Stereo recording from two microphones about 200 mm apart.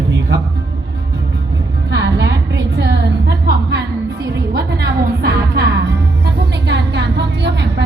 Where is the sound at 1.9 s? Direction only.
55° right (ahead or behind).